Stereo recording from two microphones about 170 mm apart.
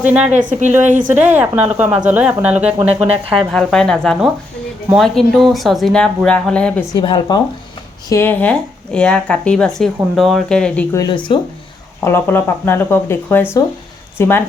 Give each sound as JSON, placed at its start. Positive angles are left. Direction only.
{"t": 0.1, "sound": "speech", "side_deg": -10}
{"t": 6.9, "sound": "speech", "side_deg": 25}
{"t": 8.1, "sound": "speech", "side_deg": 15}
{"t": 10.9, "sound": "speech", "side_deg": 25}
{"t": 12.0, "sound": "speech", "side_deg": 15}